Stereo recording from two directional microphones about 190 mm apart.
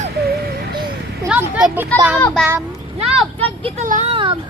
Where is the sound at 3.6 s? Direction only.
40° right (ahead or behind).